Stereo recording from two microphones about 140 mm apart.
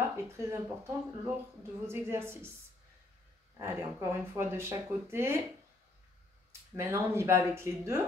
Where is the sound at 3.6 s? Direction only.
20° right (ahead or behind).